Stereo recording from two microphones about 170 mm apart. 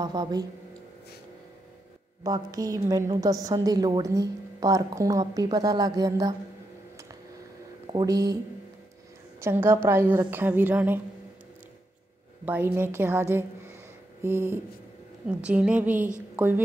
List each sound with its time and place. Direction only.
0.0 s a woman's voice: 25° right (ahead or behind)
2.2 s a woman's voice: 20° right (ahead or behind)
7.8 s speech: 25° right (ahead or behind)
9.4 s a woman's voice: 15° right (ahead or behind)
12.4 s a woman's voice: 10° right (ahead or behind)